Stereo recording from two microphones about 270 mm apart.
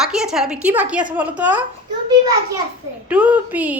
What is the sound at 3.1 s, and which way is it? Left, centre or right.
Speech, centre.